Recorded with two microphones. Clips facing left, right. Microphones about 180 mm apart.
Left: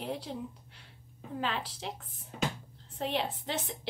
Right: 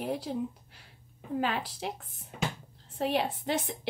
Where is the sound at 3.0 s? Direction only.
10° right (ahead or behind).